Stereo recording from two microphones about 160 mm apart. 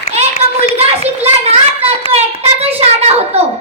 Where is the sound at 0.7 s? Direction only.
40° right (ahead or behind).